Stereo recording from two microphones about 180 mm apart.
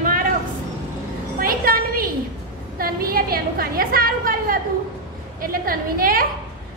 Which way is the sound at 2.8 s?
55° right (ahead or behind).